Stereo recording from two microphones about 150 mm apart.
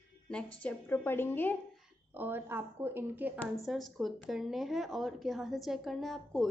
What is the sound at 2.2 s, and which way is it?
A woman's voice, 15° right (ahead or behind).